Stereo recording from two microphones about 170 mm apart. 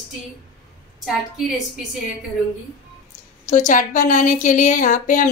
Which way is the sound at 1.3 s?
Centre (ahead or behind).